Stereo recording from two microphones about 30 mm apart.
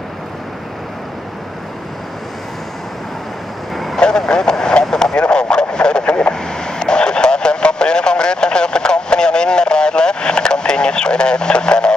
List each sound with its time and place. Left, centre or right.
4.3 s vehicle: left